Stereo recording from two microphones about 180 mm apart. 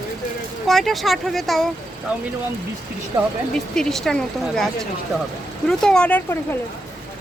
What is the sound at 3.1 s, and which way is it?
Speech, 20° right (ahead or behind).